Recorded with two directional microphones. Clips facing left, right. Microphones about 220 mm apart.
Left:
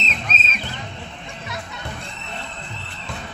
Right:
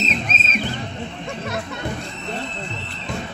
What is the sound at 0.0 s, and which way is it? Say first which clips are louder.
Music: right 5 dB; 50° right (ahead or behind).